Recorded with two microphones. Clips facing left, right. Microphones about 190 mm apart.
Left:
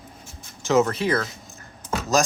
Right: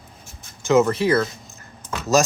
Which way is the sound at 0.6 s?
Centre (ahead or behind).